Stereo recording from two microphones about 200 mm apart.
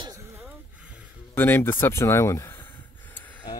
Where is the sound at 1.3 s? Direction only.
10° left (ahead or behind).